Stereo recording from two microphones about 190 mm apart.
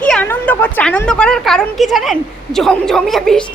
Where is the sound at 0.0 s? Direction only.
5° left (ahead or behind).